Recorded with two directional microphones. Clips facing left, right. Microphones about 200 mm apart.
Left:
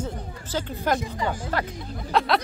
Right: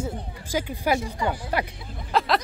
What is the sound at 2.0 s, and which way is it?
Snicker, centre (ahead or behind).